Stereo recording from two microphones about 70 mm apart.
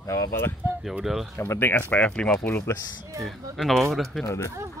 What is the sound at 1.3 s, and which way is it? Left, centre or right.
Speech, left.